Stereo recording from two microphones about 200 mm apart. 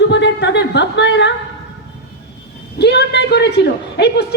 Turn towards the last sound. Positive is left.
turn(degrees=60)  # may be behind; listen again after turning